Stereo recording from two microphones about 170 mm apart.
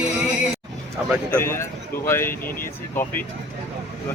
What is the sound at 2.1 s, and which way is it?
Speech, 15° left (ahead or behind).